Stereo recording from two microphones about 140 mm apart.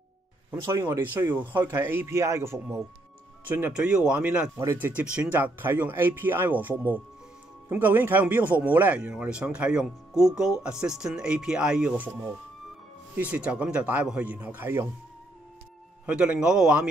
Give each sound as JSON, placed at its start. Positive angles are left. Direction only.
{"t": 0.5, "sound": "speech", "side_deg": -20}
{"t": 13.1, "sound": "speech", "side_deg": -10}
{"t": 16.1, "sound": "speech", "side_deg": -5}